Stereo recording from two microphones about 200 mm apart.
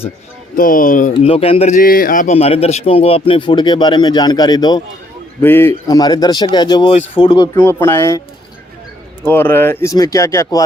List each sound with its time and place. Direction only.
0.5 s speech: 45° left (ahead or behind)
1.2 s a man's voice: 30° left (ahead or behind)
9.2 s speech: 10° left (ahead or behind)